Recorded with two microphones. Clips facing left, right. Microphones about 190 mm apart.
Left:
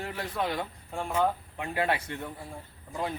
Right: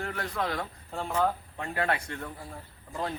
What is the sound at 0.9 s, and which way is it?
Speech, 10° left (ahead or behind).